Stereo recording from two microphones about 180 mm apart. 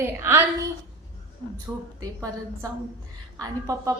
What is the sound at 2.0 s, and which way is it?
A woman's voice, 15° right (ahead or behind).